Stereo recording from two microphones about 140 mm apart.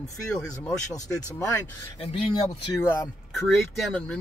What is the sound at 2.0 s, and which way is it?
Speech, 35° left (ahead or behind).